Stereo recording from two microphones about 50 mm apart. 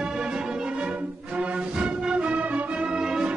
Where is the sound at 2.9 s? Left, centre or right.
Centre.